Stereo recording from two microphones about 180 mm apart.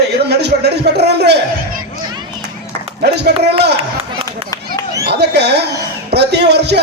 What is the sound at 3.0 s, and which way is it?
Speech, 65° right (ahead or behind).